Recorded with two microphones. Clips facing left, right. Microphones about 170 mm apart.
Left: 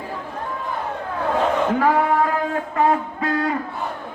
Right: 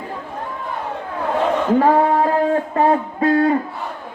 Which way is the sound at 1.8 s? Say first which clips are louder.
Right 4 dB; 30° right (ahead or behind).